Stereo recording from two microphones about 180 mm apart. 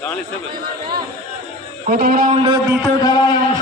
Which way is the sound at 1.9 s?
55° right (ahead or behind).